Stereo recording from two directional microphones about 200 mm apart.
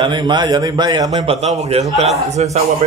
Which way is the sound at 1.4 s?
35° right (ahead or behind).